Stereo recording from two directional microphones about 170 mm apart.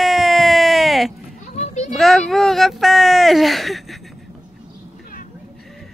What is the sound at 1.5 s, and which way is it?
Children playing, 40° left (ahead or behind).